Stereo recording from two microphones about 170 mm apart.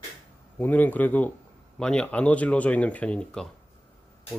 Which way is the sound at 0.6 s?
10° left (ahead or behind).